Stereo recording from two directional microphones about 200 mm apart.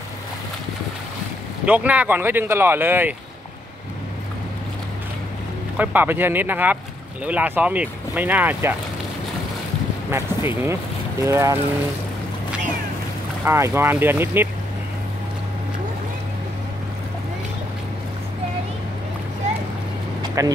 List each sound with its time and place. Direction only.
1.7 s speech: 5° right (ahead or behind)
5.8 s speech: 10° right (ahead or behind)
10.1 s speech: 10° right (ahead or behind)
13.5 s speech: 10° right (ahead or behind)
20.2 s vehicle: 20° right (ahead or behind)